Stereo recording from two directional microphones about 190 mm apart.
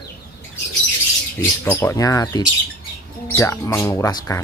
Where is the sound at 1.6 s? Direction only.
15° left (ahead or behind).